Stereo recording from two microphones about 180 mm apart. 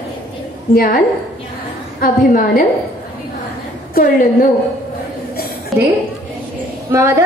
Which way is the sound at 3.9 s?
50° left (ahead or behind).